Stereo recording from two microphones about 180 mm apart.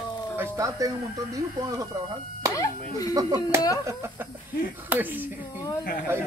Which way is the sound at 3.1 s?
20° right (ahead or behind).